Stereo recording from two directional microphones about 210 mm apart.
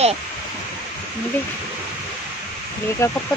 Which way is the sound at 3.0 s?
15° left (ahead or behind).